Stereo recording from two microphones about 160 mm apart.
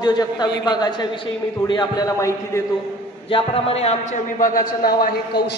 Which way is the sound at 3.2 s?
35° left (ahead or behind).